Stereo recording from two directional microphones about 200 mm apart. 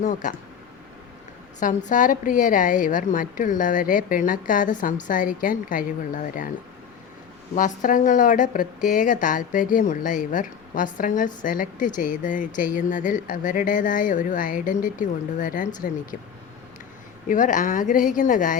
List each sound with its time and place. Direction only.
0.0 s speech: 40° left (ahead or behind)
1.5 s speech: 40° left (ahead or behind)
7.5 s speech: 40° left (ahead or behind)
17.2 s speech: 40° left (ahead or behind)